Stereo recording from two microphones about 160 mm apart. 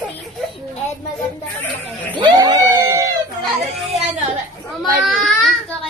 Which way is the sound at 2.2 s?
20° right (ahead or behind).